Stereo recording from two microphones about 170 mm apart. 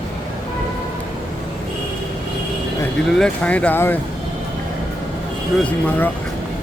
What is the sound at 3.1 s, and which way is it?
Speech, 5° left (ahead or behind).